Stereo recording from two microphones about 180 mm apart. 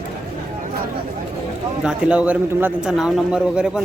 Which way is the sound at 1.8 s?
5° right (ahead or behind).